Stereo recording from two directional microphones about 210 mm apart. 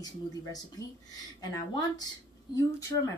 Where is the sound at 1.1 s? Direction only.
20° left (ahead or behind).